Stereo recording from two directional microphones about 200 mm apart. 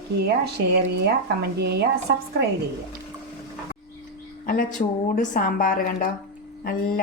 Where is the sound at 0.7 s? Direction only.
55° right (ahead or behind).